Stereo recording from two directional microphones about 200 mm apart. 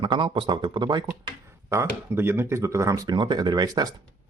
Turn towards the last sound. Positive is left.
turn(degrees=-20)  # may be behind; listen again after turning